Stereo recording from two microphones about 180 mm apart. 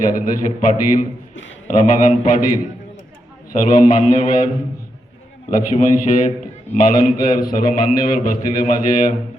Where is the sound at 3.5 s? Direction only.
45° left (ahead or behind).